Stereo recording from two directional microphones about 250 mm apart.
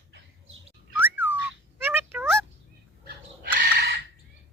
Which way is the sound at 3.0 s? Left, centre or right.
Right.